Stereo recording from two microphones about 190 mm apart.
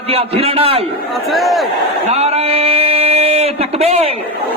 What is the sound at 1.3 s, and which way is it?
Crowd, centre (ahead or behind).